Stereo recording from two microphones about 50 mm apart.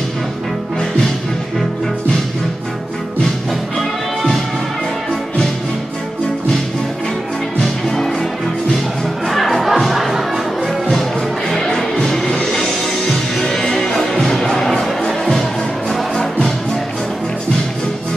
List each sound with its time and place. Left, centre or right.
7.6 s music: centre
9.3 s music: centre
11.5 s music: centre